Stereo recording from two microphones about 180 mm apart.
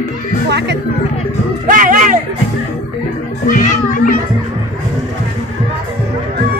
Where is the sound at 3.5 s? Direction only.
45° left (ahead or behind).